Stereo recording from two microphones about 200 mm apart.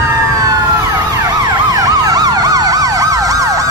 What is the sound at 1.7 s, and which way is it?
Emergency vehicle, 20° right (ahead or behind).